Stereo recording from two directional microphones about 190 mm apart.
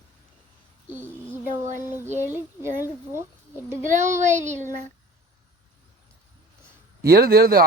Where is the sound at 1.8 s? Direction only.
10° right (ahead or behind).